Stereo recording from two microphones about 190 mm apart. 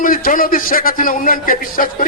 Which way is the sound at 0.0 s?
45° left (ahead or behind).